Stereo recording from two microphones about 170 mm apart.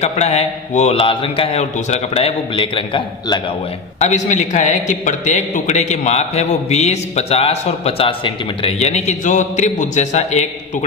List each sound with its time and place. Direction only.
0.0 s a man's voice: 40° left (ahead or behind)
4.0 s a man's voice: 45° left (ahead or behind)